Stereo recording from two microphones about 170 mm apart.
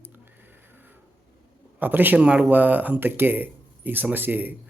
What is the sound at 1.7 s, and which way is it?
Speech, 10° right (ahead or behind).